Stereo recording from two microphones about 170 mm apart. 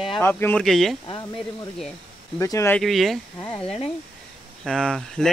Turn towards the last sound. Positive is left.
turn(degrees=5)  # may be behind; listen again after turning